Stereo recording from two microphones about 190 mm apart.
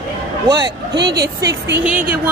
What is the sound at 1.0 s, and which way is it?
Speech, 60° right (ahead or behind).